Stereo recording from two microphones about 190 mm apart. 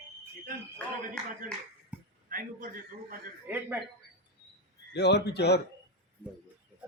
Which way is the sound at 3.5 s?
10° right (ahead or behind).